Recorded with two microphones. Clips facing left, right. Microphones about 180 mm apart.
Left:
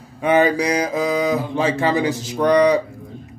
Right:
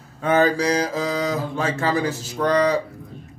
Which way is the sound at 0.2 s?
15° left (ahead or behind).